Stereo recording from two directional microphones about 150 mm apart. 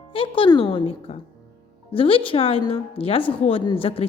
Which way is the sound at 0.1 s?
35° left (ahead or behind).